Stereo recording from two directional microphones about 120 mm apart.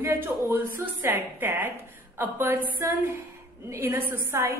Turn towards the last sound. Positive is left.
turn(degrees=-20)  # may be behind; listen again after turning